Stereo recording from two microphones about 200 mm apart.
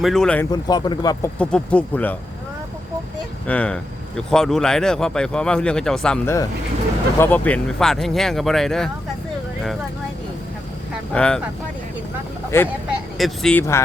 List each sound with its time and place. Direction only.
0.0 s speech: centre (ahead or behind)
0.5 s speech: 20° left (ahead or behind)
1.4 s speech: 5° left (ahead or behind)
3.4 s speech: 5° left (ahead or behind)
11.1 s speech: 5° left (ahead or behind)
12.5 s speech: 15° left (ahead or behind)
13.1 s speech: centre (ahead or behind)